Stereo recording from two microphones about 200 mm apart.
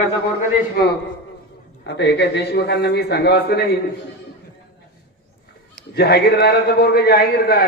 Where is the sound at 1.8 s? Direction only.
60° left (ahead or behind).